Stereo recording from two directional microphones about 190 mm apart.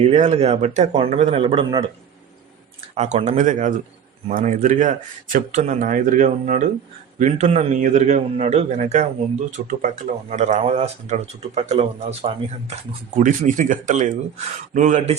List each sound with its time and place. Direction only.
0.0 s speech: 35° right (ahead or behind)
2.9 s speech: 35° right (ahead or behind)